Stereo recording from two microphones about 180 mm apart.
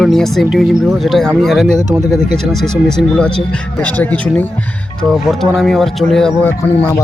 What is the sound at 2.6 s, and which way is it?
Speech, 5° left (ahead or behind).